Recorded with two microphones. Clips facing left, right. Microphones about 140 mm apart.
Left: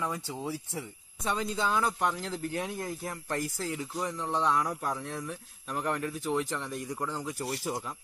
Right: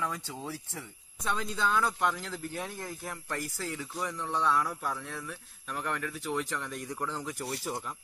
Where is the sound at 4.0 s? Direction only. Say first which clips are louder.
Left 1 dB; 30° left (ahead or behind).